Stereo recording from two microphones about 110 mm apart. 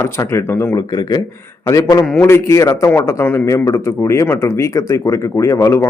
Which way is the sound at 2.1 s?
25° left (ahead or behind).